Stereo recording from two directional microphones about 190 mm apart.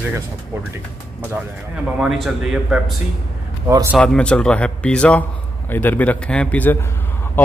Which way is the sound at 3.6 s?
15° right (ahead or behind).